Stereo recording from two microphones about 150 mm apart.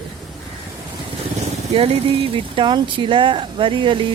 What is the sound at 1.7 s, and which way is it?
Speech, 40° right (ahead or behind).